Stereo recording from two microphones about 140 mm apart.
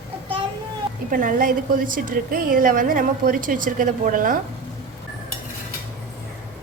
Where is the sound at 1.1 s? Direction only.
75° right (ahead or behind).